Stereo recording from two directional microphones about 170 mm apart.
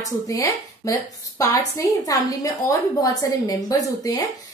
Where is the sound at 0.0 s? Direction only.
20° left (ahead or behind).